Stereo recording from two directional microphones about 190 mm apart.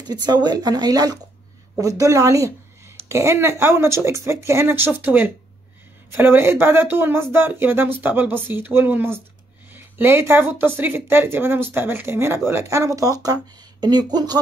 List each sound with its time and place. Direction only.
0.0 s speech: 20° right (ahead or behind)